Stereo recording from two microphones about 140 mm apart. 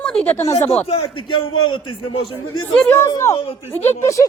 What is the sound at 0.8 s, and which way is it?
A man's voice, 35° left (ahead or behind).